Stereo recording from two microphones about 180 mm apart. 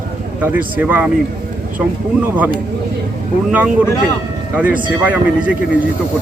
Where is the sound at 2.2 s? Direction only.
10° right (ahead or behind).